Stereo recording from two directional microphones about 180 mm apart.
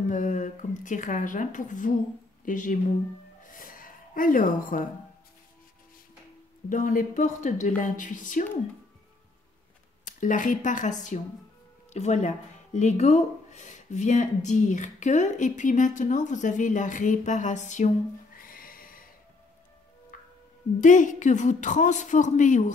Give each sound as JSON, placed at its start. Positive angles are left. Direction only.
{"t": 0.1, "sound": "speech", "side_deg": 45}
{"t": 3.4, "sound": "gasp", "side_deg": 50}
{"t": 6.7, "sound": "speech", "side_deg": 45}
{"t": 10.0, "sound": "speech", "side_deg": 45}
{"t": 20.8, "sound": "speech", "side_deg": 45}